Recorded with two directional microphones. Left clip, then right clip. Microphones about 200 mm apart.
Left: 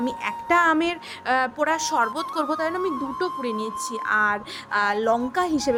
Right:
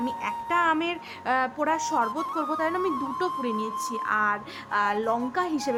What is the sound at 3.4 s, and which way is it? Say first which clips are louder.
A woman's voice: left 1 dB; 15° left (ahead or behind).